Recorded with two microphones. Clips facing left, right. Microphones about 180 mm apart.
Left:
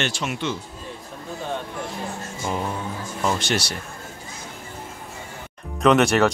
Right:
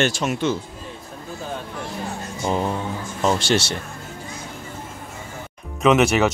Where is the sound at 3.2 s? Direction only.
30° right (ahead or behind).